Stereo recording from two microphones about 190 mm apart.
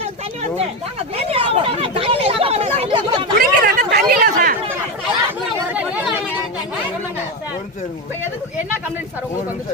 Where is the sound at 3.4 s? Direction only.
45° right (ahead or behind).